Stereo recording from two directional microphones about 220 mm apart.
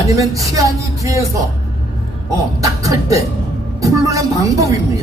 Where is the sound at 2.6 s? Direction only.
15° right (ahead or behind).